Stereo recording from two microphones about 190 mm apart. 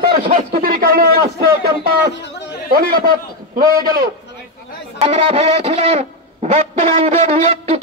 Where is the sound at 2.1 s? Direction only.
65° left (ahead or behind).